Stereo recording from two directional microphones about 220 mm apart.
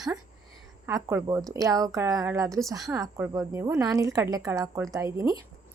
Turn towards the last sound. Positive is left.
turn(degrees=-15)  # may be behind; listen again after turning